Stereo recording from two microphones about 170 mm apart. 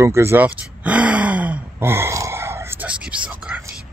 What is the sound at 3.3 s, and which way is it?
Whispering, 5° right (ahead or behind).